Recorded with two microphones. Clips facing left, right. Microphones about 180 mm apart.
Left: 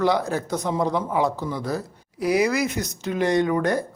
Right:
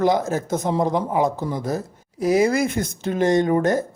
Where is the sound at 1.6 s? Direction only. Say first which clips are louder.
Right 1 dB; 20° right (ahead or behind).